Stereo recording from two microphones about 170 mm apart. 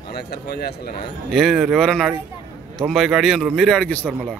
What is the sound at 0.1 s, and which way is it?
Speech, 65° left (ahead or behind).